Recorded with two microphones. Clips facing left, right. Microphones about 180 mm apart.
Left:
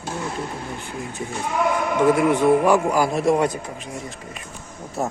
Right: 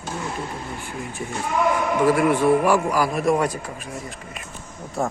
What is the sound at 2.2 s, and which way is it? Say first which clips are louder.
A man's voice: left 1 dB; 20° left (ahead or behind).